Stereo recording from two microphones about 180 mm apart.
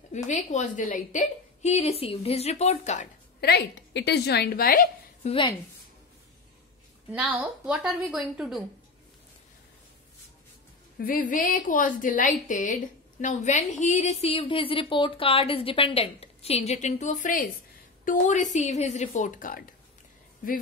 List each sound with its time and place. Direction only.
0.1 s a woman's voice: 40° left (ahead or behind)
3.3 s a woman's voice: 65° left (ahead or behind)
5.2 s a woman's voice: 30° left (ahead or behind)
7.1 s a woman's voice: 5° right (ahead or behind)
11.1 s a woman's voice: 50° left (ahead or behind)